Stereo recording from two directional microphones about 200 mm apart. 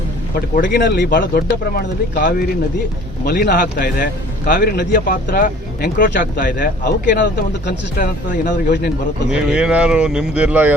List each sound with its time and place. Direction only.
0.5 s speech: 50° left (ahead or behind)
9.3 s speech: 5° right (ahead or behind)